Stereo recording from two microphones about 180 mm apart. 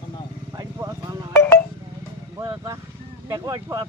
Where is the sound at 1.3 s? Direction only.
15° left (ahead or behind).